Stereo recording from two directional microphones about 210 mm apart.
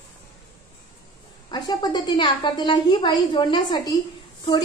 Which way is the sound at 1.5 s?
20° left (ahead or behind).